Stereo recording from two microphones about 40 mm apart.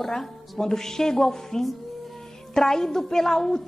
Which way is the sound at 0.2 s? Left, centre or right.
Centre.